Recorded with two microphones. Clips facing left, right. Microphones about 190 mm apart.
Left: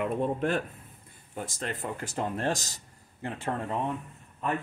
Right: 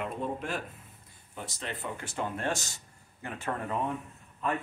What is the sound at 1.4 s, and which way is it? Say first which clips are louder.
Speech: left 4 dB; 45° left (ahead or behind).